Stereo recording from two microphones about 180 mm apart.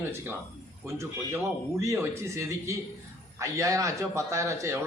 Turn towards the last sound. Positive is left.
turn(degrees=-15)  # may be behind; listen again after turning